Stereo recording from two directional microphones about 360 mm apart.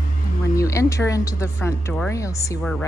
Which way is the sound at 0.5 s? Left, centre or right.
Centre.